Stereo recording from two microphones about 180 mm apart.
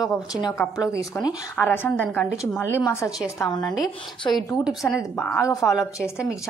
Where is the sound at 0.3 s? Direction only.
20° left (ahead or behind).